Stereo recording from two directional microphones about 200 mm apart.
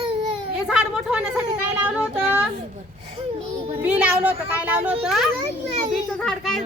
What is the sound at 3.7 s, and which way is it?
A woman's voice, 10° right (ahead or behind).